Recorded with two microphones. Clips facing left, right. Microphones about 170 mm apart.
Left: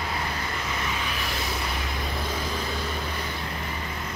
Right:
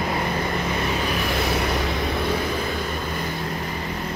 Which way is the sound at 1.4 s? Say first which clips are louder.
Right 8 dB; 65° right (ahead or behind).